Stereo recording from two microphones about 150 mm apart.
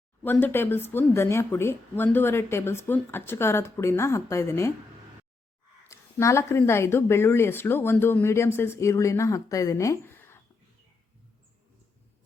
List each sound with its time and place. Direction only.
0.2 s speech: 15° left (ahead or behind)
5.9 s speech: 20° left (ahead or behind)